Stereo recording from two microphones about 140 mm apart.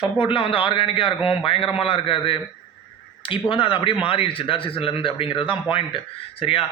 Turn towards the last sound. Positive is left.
turn(degrees=40)  # may be behind; listen again after turning